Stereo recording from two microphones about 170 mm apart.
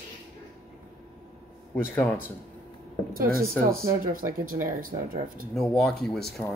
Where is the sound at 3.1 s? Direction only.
60° right (ahead or behind).